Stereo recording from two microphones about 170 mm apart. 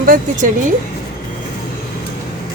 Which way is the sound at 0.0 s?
55° right (ahead or behind).